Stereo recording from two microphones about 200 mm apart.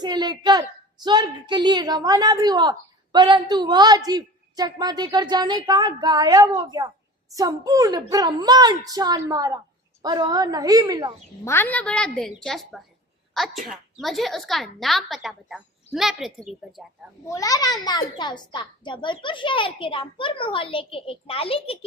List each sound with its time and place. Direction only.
0.0 s a woman's voice: 20° right (ahead or behind)
11.4 s a woman's voice: 10° left (ahead or behind)
17.3 s a child's voice: 15° left (ahead or behind)